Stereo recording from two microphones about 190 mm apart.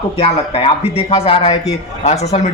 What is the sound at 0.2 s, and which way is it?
A man's voice, 30° left (ahead or behind).